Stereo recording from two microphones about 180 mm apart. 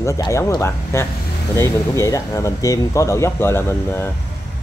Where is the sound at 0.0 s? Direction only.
15° left (ahead or behind).